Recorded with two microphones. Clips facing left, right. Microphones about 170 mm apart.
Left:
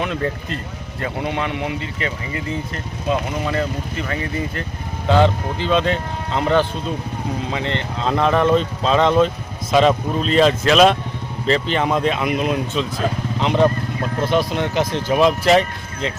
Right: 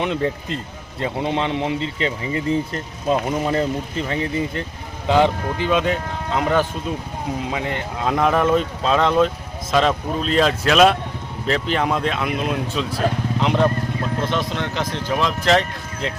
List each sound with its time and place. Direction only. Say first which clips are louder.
0.0 s speech: right 1 dB; 20° right (ahead or behind); by 15.3 s 15° left (ahead or behind)